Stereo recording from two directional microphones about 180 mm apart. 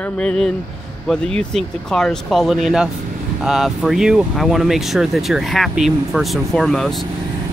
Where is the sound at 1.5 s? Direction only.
5° left (ahead or behind).